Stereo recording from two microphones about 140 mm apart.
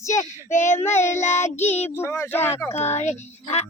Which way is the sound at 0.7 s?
15° left (ahead or behind).